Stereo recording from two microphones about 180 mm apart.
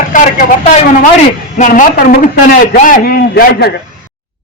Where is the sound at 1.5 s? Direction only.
45° left (ahead or behind).